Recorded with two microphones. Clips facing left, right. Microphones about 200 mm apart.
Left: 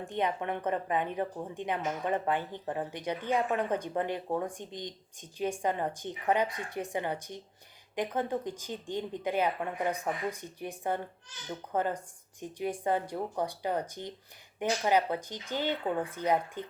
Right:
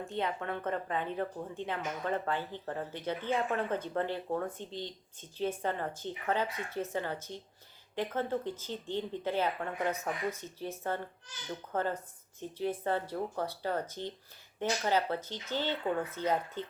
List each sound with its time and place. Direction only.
0.0 s speech: 15° left (ahead or behind)